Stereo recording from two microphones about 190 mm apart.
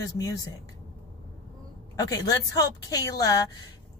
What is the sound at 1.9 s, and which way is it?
Speech, 20° left (ahead or behind).